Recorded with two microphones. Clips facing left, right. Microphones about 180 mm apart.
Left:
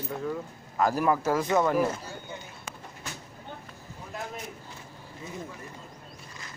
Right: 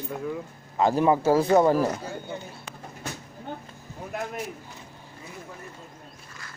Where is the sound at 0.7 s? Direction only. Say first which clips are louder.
Right 4 dB; 25° right (ahead or behind).